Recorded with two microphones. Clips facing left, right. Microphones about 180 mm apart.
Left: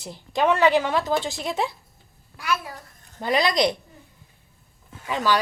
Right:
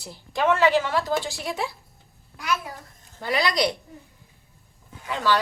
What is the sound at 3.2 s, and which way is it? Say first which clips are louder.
Speech: left 3 dB; 20° left (ahead or behind).